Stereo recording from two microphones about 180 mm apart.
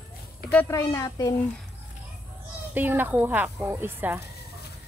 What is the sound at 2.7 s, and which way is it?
Speech, 10° right (ahead or behind).